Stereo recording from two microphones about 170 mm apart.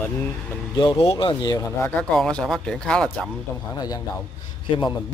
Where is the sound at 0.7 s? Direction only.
25° left (ahead or behind).